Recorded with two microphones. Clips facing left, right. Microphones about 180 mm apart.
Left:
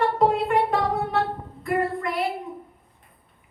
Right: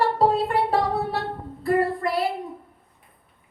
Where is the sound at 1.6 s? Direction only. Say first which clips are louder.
Right 3 dB; 35° right (ahead or behind).